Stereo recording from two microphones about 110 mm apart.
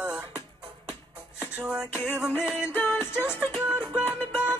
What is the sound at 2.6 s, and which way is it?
Music, 20° left (ahead or behind).